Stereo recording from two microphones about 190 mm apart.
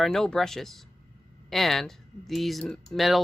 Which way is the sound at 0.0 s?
Centre (ahead or behind).